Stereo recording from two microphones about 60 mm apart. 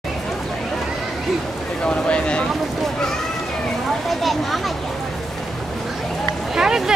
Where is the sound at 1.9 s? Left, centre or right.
Centre.